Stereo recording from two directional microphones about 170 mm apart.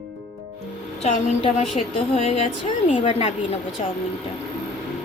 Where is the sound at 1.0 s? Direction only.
40° left (ahead or behind).